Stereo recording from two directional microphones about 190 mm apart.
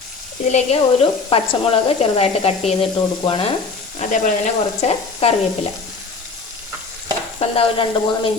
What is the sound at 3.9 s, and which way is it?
Speech, 40° left (ahead or behind).